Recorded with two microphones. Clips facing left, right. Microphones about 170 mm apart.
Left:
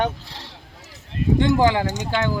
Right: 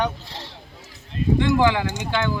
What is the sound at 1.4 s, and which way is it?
Speech, 35° left (ahead or behind).